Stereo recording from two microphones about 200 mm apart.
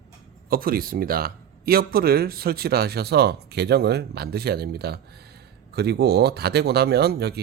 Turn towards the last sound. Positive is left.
turn(degrees=-55)  # may be behind; listen again after turning